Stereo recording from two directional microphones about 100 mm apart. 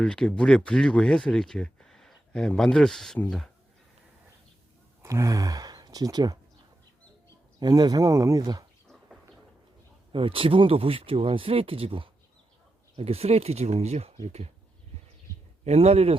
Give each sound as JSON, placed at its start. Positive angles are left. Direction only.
{"t": 0.0, "sound": "speech", "side_deg": 10}
{"t": 5.0, "sound": "speech", "side_deg": -35}
{"t": 7.6, "sound": "speech", "side_deg": -45}
{"t": 10.1, "sound": "speech", "side_deg": -65}
{"t": 13.0, "sound": "speech", "side_deg": -85}
{"t": 15.6, "sound": "speech", "side_deg": -90}